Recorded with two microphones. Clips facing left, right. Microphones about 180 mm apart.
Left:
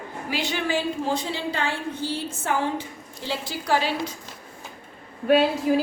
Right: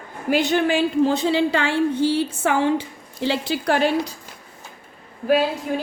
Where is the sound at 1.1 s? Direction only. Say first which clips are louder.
Right 8 dB; 80° right; by 3.9 s 60° right (ahead or behind).